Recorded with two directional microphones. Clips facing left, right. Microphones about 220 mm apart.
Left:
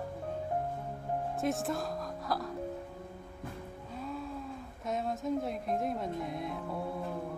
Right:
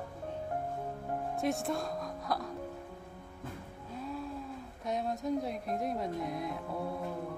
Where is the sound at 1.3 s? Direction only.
Centre (ahead or behind).